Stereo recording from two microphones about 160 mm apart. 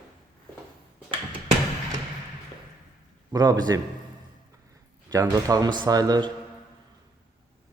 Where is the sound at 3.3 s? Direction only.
25° right (ahead or behind).